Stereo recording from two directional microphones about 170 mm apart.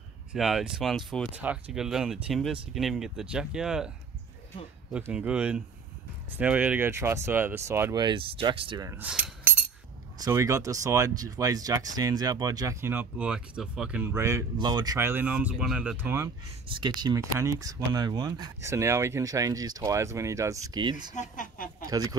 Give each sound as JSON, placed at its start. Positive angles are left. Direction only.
{"t": 0.3, "sound": "speech", "side_deg": 0}
{"t": 1.3, "sound": "speech", "side_deg": -10}
{"t": 4.9, "sound": "speech", "side_deg": -5}
{"t": 8.0, "sound": "speech", "side_deg": -30}
{"t": 8.8, "sound": "speech", "side_deg": -10}
{"t": 10.1, "sound": "speech", "side_deg": -20}
{"t": 16.7, "sound": "speech", "side_deg": -25}
{"t": 21.1, "sound": "a sound", "side_deg": 45}